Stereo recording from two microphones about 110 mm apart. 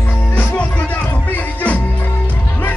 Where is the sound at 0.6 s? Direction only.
15° left (ahead or behind).